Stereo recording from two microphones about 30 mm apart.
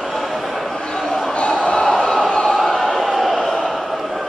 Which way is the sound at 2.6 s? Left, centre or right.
Centre.